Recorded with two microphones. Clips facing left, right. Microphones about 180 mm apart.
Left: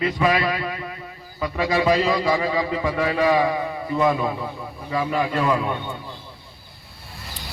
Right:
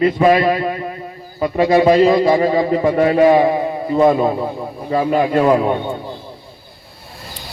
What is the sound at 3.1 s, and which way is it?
A man's voice, 30° right (ahead or behind).